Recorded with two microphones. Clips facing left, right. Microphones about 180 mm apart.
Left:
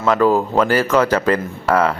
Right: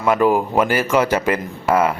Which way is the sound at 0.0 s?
10° right (ahead or behind).